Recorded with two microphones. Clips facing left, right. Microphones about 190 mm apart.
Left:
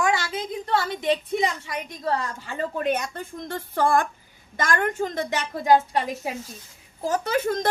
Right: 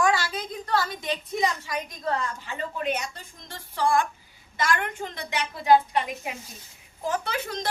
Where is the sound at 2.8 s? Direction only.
50° left (ahead or behind).